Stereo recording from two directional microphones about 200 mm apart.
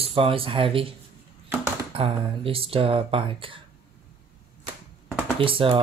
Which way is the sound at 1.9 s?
25° right (ahead or behind).